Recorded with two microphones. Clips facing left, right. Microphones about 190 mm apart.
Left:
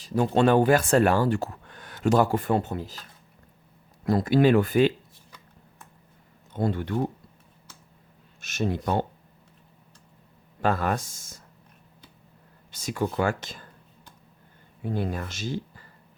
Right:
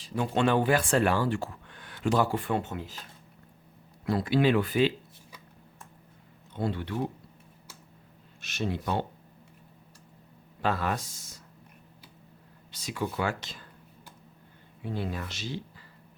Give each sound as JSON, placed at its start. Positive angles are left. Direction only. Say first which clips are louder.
{"t": 0.0, "sound": "speech", "louder": "left 5 dB", "side_deg": 40}
{"t": 4.0, "sound": "speech", "louder": "left 4 dB", "side_deg": 45}
{"t": 6.5, "sound": "speech", "louder": "left 5 dB", "side_deg": 45}
{"t": 8.4, "sound": "speech", "louder": "left 4 dB", "side_deg": 45}
{"t": 10.6, "sound": "speech", "louder": "left 4 dB", "side_deg": 50}
{"t": 12.7, "sound": "speech", "louder": "left 5 dB", "side_deg": 50}
{"t": 14.8, "sound": "speech", "louder": "left 4 dB", "side_deg": 50}